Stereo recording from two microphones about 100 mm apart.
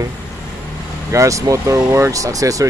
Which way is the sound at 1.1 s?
30° right (ahead or behind).